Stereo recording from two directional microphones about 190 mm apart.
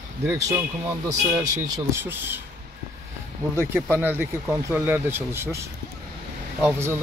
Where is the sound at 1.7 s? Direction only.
15° right (ahead or behind).